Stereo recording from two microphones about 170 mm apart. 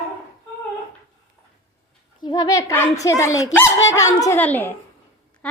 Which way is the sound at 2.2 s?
25° left (ahead or behind).